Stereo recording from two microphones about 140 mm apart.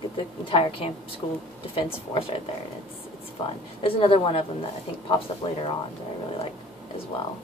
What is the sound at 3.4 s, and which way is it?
A woman's voice, 40° left (ahead or behind).